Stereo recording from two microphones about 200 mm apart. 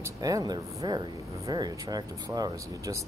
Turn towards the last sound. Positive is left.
turn(degrees=-20)  # may be behind; listen again after turning